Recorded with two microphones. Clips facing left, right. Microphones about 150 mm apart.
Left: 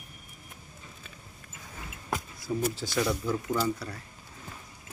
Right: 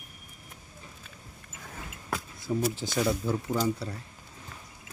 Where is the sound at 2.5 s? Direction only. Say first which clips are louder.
Right 2 dB; 10° right (ahead or behind).